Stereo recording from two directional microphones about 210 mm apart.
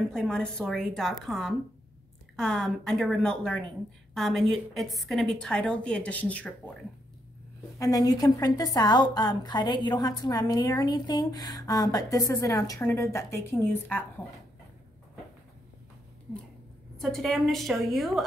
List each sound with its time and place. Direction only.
0.1 s a woman's voice: 5° left (ahead or behind)
7.8 s a woman's voice: 15° left (ahead or behind)
16.9 s a woman's voice: centre (ahead or behind)